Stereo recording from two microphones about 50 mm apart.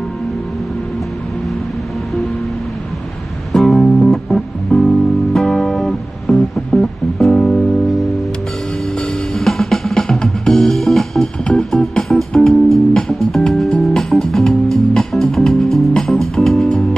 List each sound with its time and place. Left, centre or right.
3.5 s music: centre
6.7 s music: left
7.2 s music: centre
9.3 s music: centre